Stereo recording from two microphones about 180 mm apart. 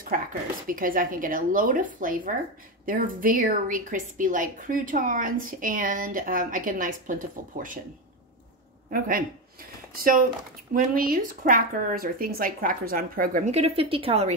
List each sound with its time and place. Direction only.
0.1 s a woman's voice: 50° right (ahead or behind)
8.9 s a woman's voice: 50° right (ahead or behind)
13.5 s a woman's voice: 35° right (ahead or behind)